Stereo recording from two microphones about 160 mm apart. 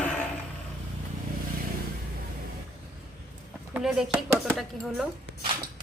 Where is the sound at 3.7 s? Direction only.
5° right (ahead or behind).